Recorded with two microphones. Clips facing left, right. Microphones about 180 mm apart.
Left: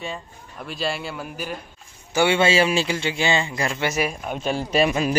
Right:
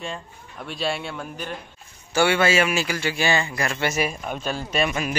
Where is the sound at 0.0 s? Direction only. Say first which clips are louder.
Left 1 dB; centre (ahead or behind).